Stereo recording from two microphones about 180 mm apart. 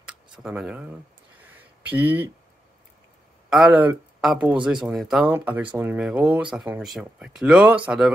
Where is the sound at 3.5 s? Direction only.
5° right (ahead or behind).